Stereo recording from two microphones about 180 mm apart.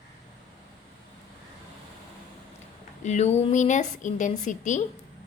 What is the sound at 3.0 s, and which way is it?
A woman's voice, 40° left (ahead or behind).